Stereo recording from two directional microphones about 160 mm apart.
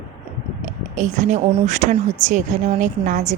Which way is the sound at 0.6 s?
50° right (ahead or behind).